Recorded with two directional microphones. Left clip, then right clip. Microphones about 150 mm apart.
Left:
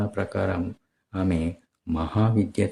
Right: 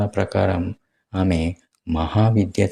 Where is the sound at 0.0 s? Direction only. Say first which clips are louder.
Right 6 dB; 20° right (ahead or behind).